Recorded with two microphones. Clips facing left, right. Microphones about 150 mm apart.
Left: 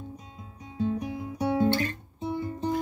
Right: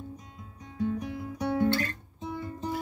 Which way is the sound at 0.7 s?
20° left (ahead or behind).